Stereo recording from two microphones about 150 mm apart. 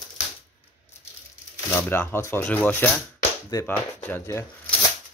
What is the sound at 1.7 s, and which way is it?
Speech, 15° left (ahead or behind).